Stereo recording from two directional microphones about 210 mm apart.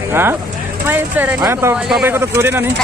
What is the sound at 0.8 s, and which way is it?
Speech, 10° right (ahead or behind).